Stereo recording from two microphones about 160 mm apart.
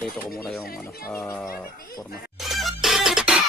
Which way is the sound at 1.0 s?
15° left (ahead or behind).